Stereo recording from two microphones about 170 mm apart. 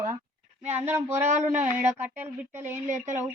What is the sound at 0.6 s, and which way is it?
Speech, 40° right (ahead or behind).